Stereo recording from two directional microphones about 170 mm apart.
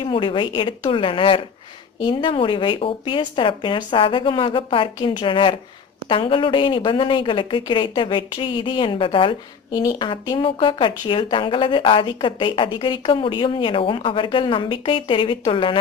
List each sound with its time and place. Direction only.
0.1 s a woman's voice: 30° left (ahead or behind)